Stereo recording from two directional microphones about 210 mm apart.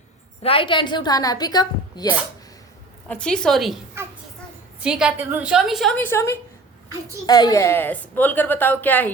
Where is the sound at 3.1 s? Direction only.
5° left (ahead or behind).